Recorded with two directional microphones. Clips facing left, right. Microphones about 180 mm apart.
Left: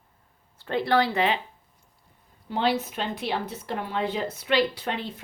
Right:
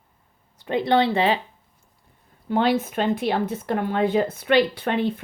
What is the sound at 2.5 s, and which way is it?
A woman's voice, 50° right (ahead or behind).